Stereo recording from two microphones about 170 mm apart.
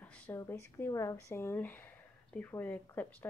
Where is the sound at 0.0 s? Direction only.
10° left (ahead or behind).